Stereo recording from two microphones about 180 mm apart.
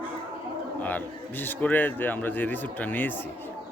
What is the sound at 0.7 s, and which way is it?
A man's voice, 10° left (ahead or behind).